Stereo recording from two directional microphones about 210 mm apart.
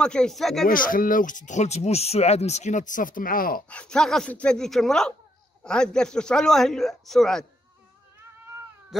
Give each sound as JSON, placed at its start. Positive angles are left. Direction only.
{"t": 0.0, "sound": "a man's voice", "side_deg": 5}
{"t": 0.7, "sound": "speech", "side_deg": 40}
{"t": 3.6, "sound": "a man's voice", "side_deg": 5}